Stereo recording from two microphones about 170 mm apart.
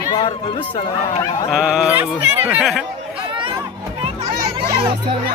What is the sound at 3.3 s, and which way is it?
Music, 30° right (ahead or behind).